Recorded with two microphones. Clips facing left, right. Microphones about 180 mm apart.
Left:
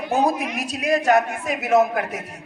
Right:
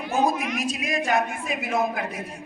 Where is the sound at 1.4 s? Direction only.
75° left (ahead or behind).